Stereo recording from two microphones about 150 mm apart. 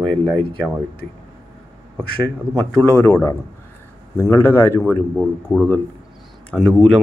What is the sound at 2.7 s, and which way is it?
A man's voice, 10° left (ahead or behind).